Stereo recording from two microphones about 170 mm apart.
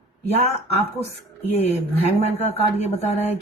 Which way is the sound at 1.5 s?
40° left (ahead or behind).